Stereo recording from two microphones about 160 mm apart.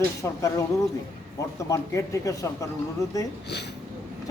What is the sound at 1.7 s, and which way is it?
Speech, 20° left (ahead or behind).